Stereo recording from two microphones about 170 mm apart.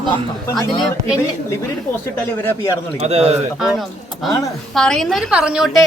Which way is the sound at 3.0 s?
40° right (ahead or behind).